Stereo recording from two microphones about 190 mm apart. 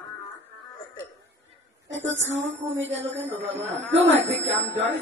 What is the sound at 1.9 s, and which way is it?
Speech, 75° right (ahead or behind).